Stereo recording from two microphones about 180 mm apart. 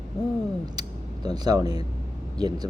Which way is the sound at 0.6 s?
20° right (ahead or behind).